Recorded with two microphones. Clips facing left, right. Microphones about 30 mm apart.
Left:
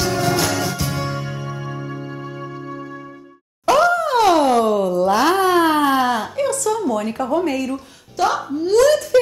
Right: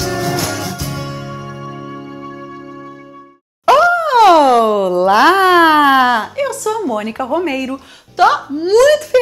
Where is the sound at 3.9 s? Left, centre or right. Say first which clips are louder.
Right 6 dB; right.